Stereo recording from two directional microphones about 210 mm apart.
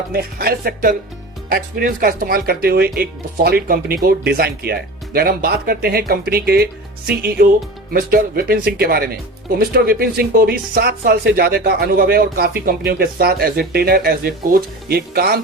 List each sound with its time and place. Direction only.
0.1 s speech: 45° right (ahead or behind)